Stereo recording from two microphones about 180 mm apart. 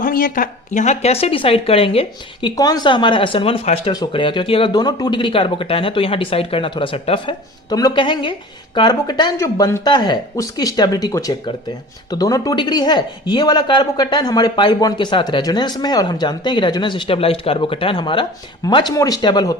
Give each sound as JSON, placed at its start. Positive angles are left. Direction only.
{"t": 0.0, "sound": "speech", "side_deg": 50}
{"t": 2.6, "sound": "speech", "side_deg": 20}